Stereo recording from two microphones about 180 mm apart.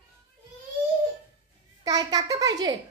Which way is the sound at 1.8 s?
20° right (ahead or behind).